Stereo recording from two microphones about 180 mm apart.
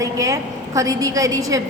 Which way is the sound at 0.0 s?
20° right (ahead or behind).